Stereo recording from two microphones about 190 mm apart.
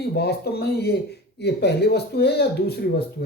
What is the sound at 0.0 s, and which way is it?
Speech, 60° left (ahead or behind).